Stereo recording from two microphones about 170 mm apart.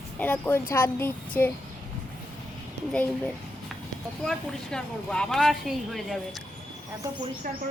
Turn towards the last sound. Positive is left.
turn(degrees=-55)  # may be behind; listen again after turning